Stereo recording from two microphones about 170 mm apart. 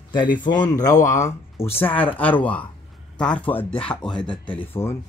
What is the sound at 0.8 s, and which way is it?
Speech, 45° left (ahead or behind).